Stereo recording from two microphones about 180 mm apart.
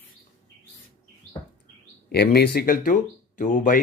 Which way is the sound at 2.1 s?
60° left (ahead or behind).